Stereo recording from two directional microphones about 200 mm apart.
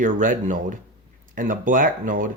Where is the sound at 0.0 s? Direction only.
40° right (ahead or behind).